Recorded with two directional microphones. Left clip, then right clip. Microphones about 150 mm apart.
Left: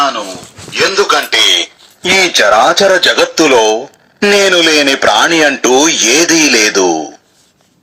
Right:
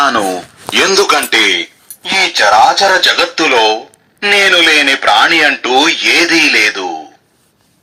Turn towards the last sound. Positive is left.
turn(degrees=85)